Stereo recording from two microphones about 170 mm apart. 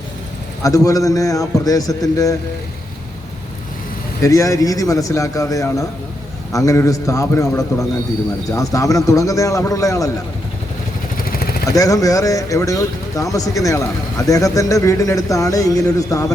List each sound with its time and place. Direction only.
0.6 s speech: 20° left (ahead or behind)
4.2 s speech: 20° left (ahead or behind)
11.2 s vehicle: 60° left (ahead or behind)
11.7 s speech: 20° left (ahead or behind)